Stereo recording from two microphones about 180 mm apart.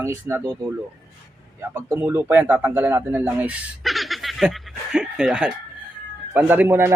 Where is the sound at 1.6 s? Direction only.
10° right (ahead or behind).